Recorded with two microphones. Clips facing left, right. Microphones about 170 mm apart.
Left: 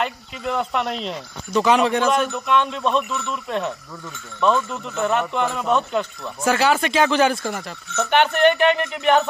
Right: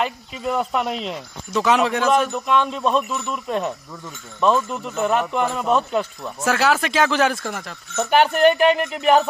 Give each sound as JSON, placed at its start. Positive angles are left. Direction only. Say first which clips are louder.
{"t": 0.5, "sound": "speech", "louder": "right 1 dB", "side_deg": -5}
{"t": 7.9, "sound": "speech", "louder": "right 1 dB", "side_deg": -35}
{"t": 8.5, "sound": "speech", "louder": "right 1 dB", "side_deg": -5}